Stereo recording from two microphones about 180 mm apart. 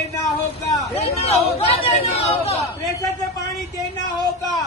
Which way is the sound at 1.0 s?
35° left (ahead or behind).